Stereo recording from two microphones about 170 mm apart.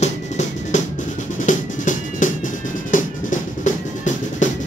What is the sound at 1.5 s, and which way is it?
Music, 50° left (ahead or behind).